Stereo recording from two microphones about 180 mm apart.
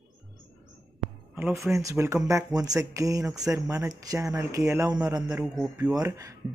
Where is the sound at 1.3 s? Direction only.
10° right (ahead or behind).